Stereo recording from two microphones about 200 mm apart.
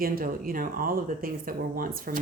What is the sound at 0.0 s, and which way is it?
Speech, 45° right (ahead or behind).